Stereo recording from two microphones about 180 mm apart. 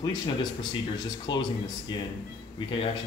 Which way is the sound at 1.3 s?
25° left (ahead or behind).